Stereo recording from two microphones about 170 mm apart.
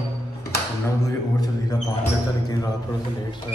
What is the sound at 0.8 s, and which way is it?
Speech, 20° left (ahead or behind).